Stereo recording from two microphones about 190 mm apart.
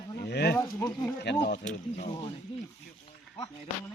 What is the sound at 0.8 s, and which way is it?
Speech, 10° left (ahead or behind).